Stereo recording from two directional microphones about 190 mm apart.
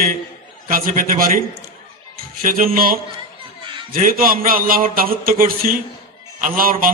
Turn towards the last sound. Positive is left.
turn(degrees=-45)  # may be behind; listen again after turning